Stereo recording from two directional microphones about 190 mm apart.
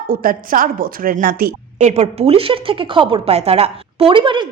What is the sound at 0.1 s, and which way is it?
A woman's voice, 50° right (ahead or behind).